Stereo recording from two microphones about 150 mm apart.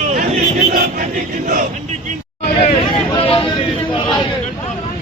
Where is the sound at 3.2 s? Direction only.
35° left (ahead or behind).